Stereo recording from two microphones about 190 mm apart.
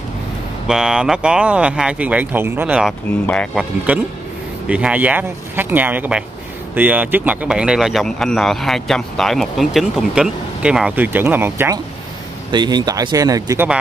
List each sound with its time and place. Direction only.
0.7 s speech: 5° right (ahead or behind)
12.4 s speech: 20° right (ahead or behind)